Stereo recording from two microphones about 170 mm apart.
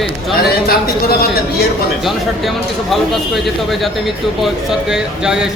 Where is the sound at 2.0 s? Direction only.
Centre (ahead or behind).